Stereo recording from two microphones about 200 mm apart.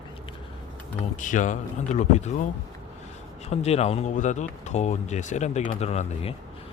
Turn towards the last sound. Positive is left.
turn(degrees=30)  # may be behind; listen again after turning